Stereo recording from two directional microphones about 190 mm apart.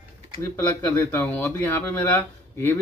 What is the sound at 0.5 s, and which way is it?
Speech, 10° left (ahead or behind).